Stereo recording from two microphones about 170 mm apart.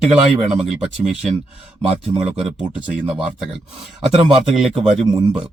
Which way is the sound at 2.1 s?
30° right (ahead or behind).